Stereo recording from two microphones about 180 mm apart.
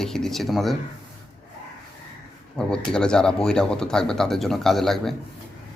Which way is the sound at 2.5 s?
5° left (ahead or behind).